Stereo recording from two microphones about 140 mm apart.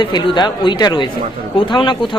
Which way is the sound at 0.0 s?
35° left (ahead or behind).